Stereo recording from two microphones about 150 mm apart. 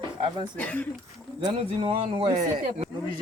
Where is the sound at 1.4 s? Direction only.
35° right (ahead or behind).